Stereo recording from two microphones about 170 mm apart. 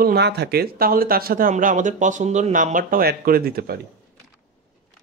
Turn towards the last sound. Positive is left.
turn(degrees=-65)  # may be behind; listen again after turning